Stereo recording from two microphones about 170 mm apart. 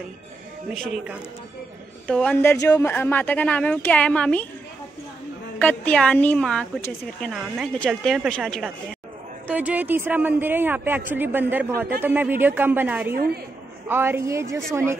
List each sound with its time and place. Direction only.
2.0 s speech: 5° left (ahead or behind)
5.6 s a woman's voice: 10° left (ahead or behind); by 13.1 s 10° right (ahead or behind)
13.1 s a woman's voice: 65° right (ahead or behind)
13.8 s speech: 15° right (ahead or behind)